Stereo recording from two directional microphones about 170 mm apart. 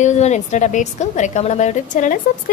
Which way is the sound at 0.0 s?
45° left (ahead or behind).